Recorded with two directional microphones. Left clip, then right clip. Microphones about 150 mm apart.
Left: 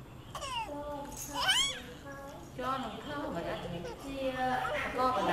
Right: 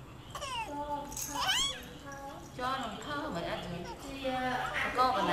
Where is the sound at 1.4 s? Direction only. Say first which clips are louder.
Left 2 dB; 5° left (ahead or behind).